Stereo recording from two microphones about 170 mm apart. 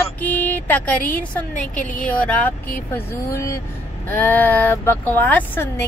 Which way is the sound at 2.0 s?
10° left (ahead or behind).